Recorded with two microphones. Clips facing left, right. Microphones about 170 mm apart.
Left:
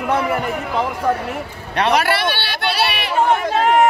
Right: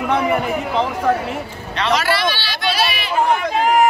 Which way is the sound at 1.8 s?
60° left (ahead or behind).